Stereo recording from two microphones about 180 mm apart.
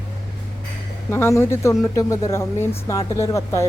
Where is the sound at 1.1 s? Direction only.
15° left (ahead or behind).